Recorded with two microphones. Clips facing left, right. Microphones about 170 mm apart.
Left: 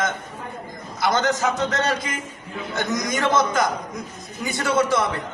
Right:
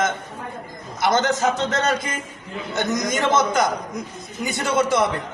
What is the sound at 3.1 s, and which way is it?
A man's voice, 20° right (ahead or behind).